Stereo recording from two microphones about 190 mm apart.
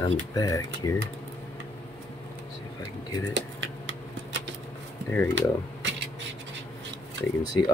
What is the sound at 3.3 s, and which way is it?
Typing, 80° right.